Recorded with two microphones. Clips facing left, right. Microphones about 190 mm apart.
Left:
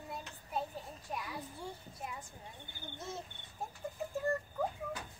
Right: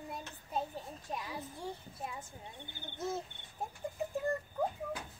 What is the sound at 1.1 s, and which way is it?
Speech, 25° right (ahead or behind).